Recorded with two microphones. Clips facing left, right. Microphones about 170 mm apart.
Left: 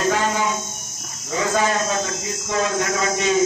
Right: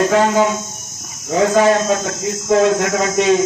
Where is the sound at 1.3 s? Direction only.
60° right (ahead or behind).